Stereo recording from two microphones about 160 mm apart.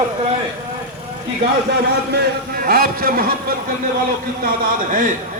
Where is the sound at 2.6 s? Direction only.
65° right (ahead or behind).